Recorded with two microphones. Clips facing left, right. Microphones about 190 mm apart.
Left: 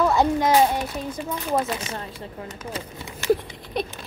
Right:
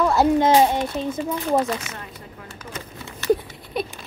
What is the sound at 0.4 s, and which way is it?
Speech, 25° right (ahead or behind).